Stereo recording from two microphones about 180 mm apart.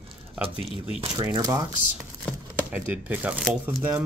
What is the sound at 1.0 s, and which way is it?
Speech, 20° right (ahead or behind).